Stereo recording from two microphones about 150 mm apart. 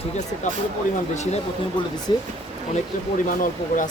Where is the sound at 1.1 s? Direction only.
50° left (ahead or behind).